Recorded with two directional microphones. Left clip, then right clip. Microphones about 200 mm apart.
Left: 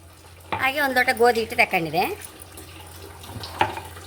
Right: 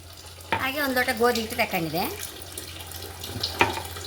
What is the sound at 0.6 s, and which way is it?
A woman's voice, 50° left (ahead or behind).